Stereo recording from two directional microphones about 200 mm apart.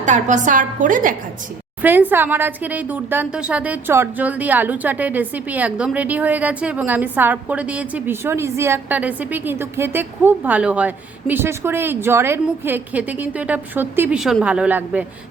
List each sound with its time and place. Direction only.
0.0 s a woman's voice: 40° right (ahead or behind)
1.8 s a woman's voice: 10° right (ahead or behind)